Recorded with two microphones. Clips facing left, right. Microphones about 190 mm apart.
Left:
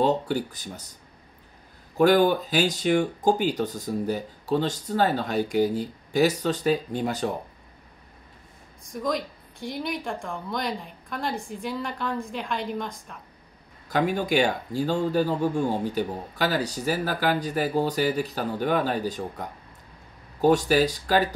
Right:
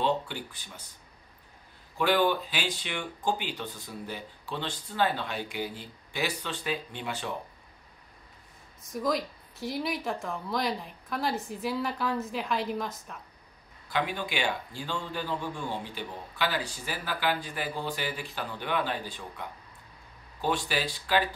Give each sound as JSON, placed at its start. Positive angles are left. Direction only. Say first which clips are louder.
{"t": 0.0, "sound": "speech", "louder": "left 6 dB", "side_deg": 40}
{"t": 2.0, "sound": "speech", "louder": "left 7 dB", "side_deg": 40}
{"t": 8.9, "sound": "speech", "louder": "left 1 dB", "side_deg": 0}
{"t": 13.8, "sound": "speech", "louder": "left 7 dB", "side_deg": 45}